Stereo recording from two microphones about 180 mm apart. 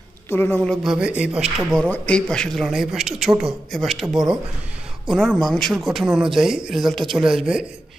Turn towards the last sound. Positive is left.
turn(degrees=-5)  # may be behind; listen again after turning